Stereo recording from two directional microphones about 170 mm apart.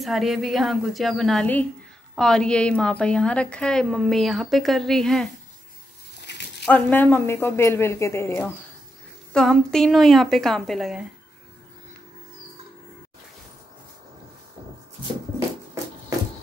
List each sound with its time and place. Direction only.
0.0 s a woman's voice: centre (ahead or behind)
6.3 s a sound: 90° left
6.6 s speech: 10° left (ahead or behind)
9.3 s a woman's voice: 5° left (ahead or behind)